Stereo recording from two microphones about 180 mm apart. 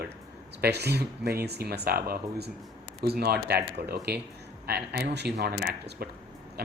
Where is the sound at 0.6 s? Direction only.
65° right (ahead or behind).